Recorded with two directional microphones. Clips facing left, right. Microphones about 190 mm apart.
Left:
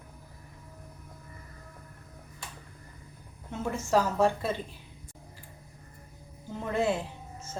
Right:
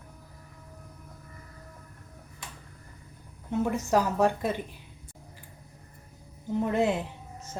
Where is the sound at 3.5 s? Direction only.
15° right (ahead or behind).